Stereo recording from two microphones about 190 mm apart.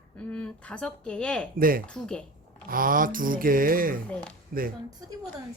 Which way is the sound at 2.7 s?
50° right (ahead or behind).